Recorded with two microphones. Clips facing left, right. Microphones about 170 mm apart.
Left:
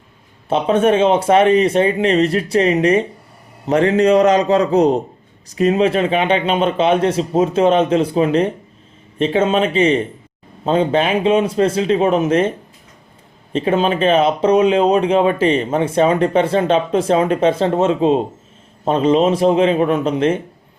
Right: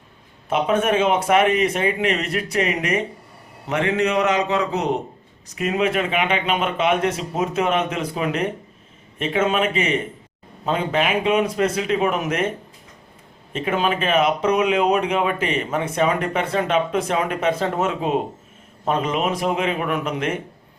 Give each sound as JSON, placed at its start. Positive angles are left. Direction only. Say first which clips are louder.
{"t": 0.4, "sound": "a man's voice", "louder": "left 5 dB", "side_deg": 30}
{"t": 13.5, "sound": "speech", "louder": "left 6 dB", "side_deg": 30}